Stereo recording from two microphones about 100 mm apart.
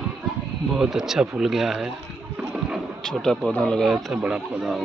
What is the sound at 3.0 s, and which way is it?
Speech, 5° left (ahead or behind).